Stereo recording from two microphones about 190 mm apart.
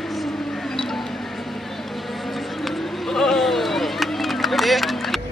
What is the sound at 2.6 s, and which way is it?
Run, centre (ahead or behind).